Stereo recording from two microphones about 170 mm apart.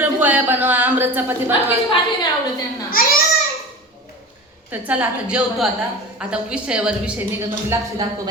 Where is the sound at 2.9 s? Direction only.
60° left (ahead or behind).